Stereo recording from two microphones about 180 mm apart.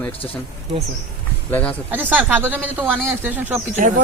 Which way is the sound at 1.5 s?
10° left (ahead or behind).